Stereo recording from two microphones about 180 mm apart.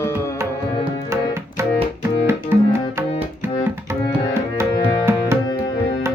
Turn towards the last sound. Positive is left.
turn(degrees=-15)  # may be behind; listen again after turning